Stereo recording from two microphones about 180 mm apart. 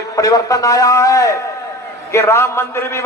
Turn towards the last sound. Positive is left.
turn(degrees=15)  # may be behind; listen again after turning